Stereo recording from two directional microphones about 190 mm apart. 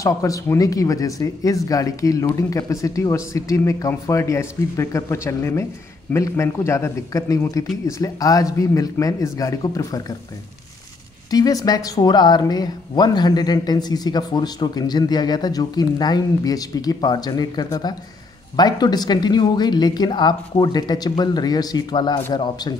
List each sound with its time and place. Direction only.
0.0 s speech: 15° left (ahead or behind)
11.2 s speech: 20° left (ahead or behind)